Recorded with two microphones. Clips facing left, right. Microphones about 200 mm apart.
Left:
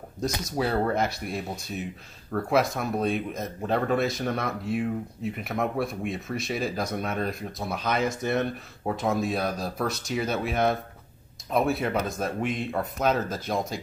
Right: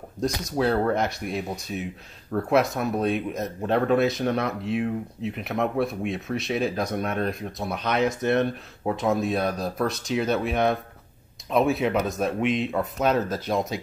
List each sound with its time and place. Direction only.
0.2 s speech: 5° left (ahead or behind)
12.4 s speech: 90° right
12.7 s speech: centre (ahead or behind)